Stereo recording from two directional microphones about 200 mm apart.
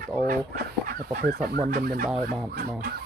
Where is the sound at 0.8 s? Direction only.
45° right (ahead or behind).